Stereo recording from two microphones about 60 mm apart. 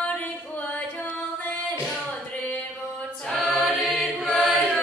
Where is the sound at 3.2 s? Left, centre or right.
Centre.